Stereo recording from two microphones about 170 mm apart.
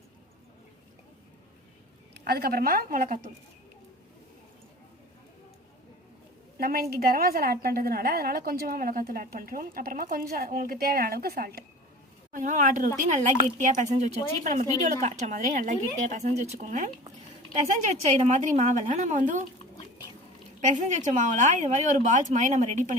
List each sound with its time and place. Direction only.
2.1 s a woman's voice: 70° right (ahead or behind)
6.6 s a woman's voice: 60° right (ahead or behind)
12.3 s a woman's voice: 45° right (ahead or behind)
20.6 s a woman's voice: 45° right (ahead or behind)